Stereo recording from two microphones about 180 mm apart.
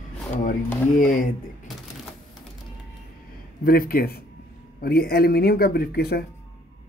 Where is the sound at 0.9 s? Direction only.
50° left (ahead or behind).